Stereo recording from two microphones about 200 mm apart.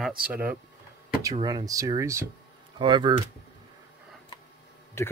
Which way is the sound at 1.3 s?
20° right (ahead or behind).